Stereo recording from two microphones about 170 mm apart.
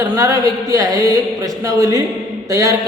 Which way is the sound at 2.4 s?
20° right (ahead or behind).